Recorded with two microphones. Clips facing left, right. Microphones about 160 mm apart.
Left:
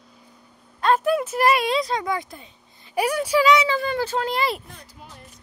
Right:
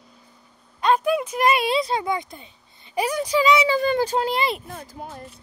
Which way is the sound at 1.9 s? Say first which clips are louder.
Right 1 dB; 25° right (ahead or behind).